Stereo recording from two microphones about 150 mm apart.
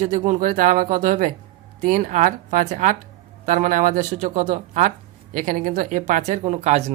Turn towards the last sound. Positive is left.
turn(degrees=-45)  # may be behind; listen again after turning